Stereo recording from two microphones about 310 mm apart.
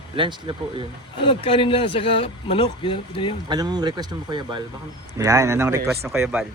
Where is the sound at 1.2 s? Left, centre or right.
Centre.